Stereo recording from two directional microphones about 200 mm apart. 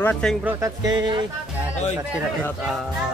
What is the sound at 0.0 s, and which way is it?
Speech, 5° left (ahead or behind).